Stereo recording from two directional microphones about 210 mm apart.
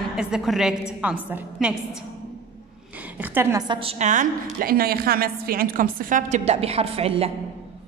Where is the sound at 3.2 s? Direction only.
10° right (ahead or behind); by 7.3 s 30° right (ahead or behind).